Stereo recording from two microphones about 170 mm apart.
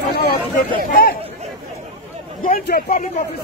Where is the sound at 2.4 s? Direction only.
50° left (ahead or behind).